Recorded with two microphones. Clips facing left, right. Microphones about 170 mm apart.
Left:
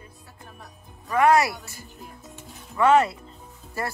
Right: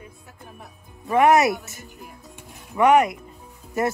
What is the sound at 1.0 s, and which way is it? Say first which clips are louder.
A woman's voice: right 3 dB; 20° right (ahead or behind).